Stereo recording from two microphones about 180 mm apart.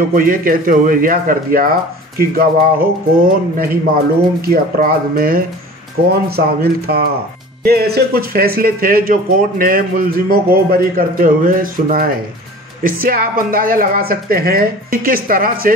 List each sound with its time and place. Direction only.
0.1 s speech: 50° right (ahead or behind)